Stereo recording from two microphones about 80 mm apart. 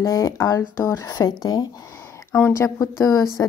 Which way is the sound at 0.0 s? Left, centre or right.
Left.